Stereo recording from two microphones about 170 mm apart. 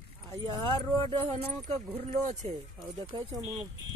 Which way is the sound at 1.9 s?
40° right (ahead or behind).